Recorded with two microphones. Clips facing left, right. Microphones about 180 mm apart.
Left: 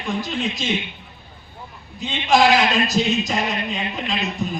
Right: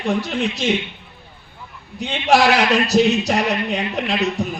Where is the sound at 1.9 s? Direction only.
70° right (ahead or behind).